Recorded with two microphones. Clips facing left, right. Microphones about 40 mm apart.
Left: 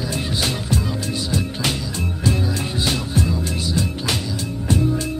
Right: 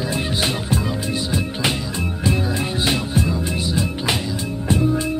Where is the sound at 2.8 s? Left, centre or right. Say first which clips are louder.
Right 1 dB; right.